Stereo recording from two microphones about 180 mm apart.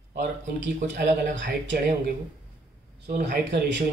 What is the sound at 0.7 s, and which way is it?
Speech, 45° right (ahead or behind).